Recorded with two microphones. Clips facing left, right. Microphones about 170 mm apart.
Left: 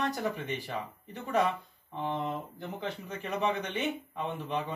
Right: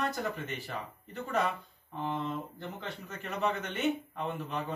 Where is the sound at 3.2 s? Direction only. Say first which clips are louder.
Left 2 dB; 15° left (ahead or behind).